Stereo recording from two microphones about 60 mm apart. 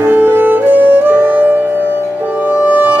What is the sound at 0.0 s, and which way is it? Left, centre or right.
Music, right.